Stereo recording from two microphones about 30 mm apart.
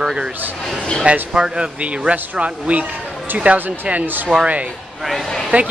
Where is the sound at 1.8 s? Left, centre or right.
Right.